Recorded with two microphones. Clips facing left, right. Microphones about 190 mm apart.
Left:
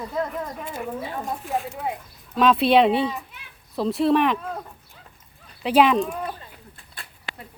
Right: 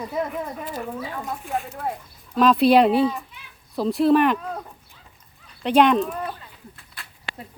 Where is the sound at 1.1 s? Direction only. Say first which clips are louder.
Left 1 dB; 25° left (ahead or behind).